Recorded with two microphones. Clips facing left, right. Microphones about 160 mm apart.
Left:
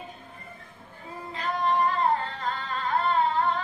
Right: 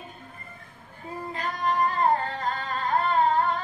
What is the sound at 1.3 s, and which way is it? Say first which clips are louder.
Singing: left 2 dB; 45° right (ahead or behind).